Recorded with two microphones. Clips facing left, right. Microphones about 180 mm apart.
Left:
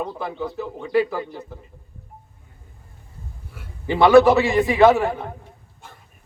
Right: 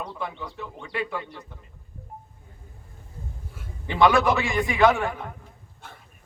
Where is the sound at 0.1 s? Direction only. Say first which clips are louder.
Left 6 dB; 35° left (ahead or behind).